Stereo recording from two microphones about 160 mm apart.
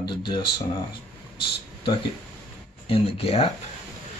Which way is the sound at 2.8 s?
35° left (ahead or behind).